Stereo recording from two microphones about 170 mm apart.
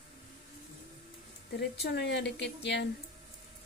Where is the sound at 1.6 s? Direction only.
85° left.